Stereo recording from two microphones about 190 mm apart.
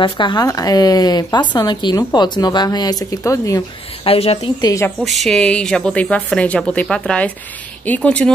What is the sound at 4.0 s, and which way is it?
Speech, 30° left (ahead or behind).